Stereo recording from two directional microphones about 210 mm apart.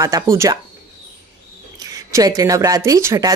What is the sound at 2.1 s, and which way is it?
Speech, 15° right (ahead or behind).